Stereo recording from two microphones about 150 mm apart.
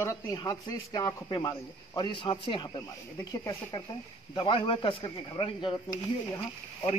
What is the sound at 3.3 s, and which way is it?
Speech, 20° left (ahead or behind).